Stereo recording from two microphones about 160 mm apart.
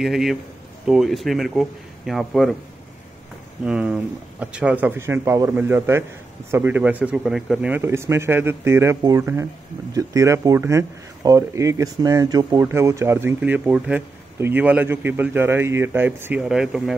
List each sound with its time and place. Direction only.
0.0 s speech: centre (ahead or behind)
3.6 s speech: 5° right (ahead or behind)
7.7 s speech: 15° right (ahead or behind)